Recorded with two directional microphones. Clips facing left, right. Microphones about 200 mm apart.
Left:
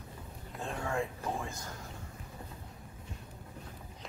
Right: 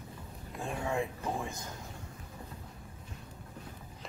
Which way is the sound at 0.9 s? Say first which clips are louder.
Right 1 dB; 20° right (ahead or behind).